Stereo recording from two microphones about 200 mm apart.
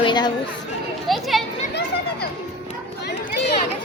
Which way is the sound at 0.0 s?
20° left (ahead or behind).